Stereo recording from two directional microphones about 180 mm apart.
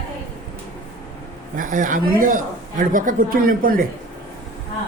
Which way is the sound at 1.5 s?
45° right (ahead or behind).